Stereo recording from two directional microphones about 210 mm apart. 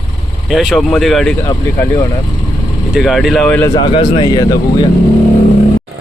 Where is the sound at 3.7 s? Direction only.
25° left (ahead or behind).